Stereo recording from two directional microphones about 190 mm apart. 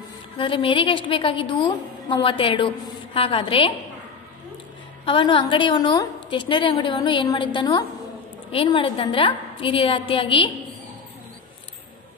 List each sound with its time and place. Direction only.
0.4 s a woman's voice: 25° left (ahead or behind)
5.0 s a woman's voice: 25° left (ahead or behind)